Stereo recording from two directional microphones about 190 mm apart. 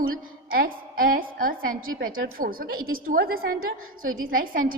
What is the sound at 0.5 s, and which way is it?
A woman's voice, 50° right (ahead or behind).